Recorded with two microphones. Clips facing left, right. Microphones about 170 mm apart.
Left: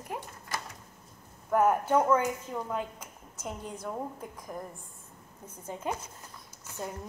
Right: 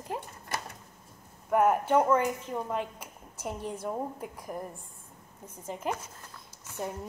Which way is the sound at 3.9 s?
10° right (ahead or behind).